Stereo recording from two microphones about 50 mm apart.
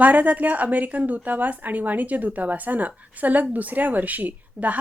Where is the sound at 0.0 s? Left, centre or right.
Right.